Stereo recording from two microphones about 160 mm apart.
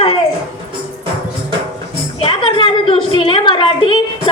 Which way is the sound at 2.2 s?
30° left (ahead or behind).